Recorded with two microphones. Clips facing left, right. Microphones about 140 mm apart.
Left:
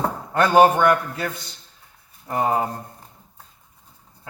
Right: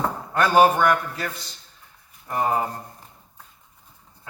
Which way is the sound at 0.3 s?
25° left (ahead or behind).